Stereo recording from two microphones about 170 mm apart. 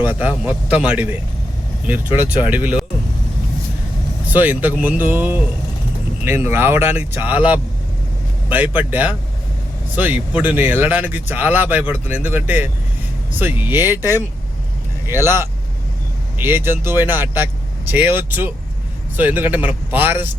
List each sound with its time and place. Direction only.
0.0 s speech: 10° right (ahead or behind)
2.4 s speech: 10° right (ahead or behind)
4.3 s speech: 10° right (ahead or behind)
14.0 s speech: 20° left (ahead or behind)
15.0 s speech: 15° right (ahead or behind)